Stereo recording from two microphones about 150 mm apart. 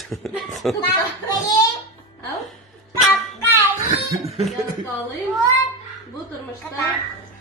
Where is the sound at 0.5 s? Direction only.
Centre (ahead or behind).